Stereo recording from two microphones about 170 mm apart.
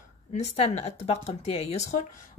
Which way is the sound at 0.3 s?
40° left (ahead or behind).